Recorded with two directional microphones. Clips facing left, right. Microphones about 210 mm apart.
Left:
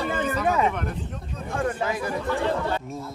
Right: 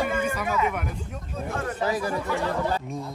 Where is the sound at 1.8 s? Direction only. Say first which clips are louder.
Right 1 dB; 35° right (ahead or behind).